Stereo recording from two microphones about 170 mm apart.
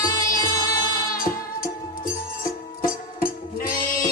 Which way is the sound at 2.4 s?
60° left (ahead or behind).